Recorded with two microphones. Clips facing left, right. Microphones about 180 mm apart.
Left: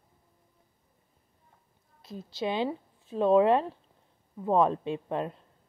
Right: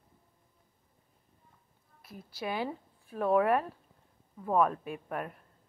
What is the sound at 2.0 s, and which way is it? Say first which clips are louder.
A woman's voice: left 7 dB; 25° left (ahead or behind).